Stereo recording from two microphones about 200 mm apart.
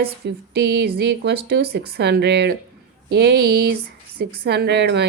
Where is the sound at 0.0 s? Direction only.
55° right (ahead or behind).